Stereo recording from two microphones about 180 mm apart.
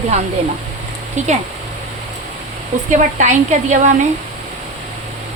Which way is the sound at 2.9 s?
45° right (ahead or behind).